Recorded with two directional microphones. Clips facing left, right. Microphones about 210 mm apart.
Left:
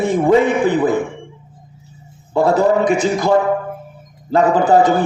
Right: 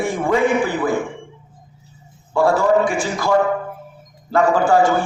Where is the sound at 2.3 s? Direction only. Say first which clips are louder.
Left 2 dB; 20° left (ahead or behind).